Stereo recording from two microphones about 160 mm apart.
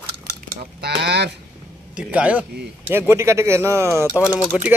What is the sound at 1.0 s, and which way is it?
Speech, 90° right.